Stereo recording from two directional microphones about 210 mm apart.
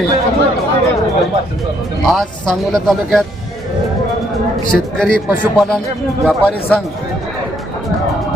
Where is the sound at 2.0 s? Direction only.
Centre (ahead or behind).